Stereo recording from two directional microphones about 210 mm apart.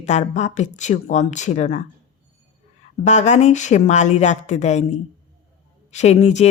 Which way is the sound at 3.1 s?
35° left (ahead or behind).